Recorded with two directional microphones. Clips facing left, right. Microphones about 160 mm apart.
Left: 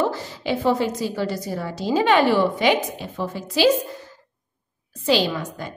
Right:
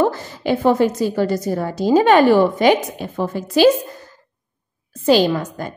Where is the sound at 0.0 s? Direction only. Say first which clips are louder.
Right 5 dB; 50° right (ahead or behind).